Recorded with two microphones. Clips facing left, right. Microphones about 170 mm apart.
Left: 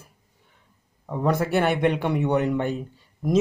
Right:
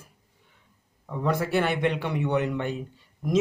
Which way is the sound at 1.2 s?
45° left (ahead or behind).